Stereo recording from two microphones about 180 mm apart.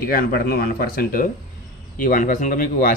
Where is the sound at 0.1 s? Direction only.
60° left (ahead or behind).